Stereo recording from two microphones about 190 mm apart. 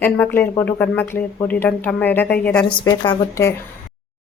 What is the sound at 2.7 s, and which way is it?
Speech, 25° left (ahead or behind).